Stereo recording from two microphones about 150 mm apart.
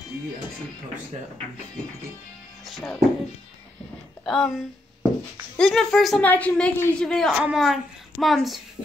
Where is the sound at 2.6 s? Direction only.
Centre (ahead or behind).